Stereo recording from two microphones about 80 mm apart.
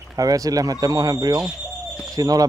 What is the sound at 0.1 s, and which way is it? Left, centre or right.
A man's voice, right.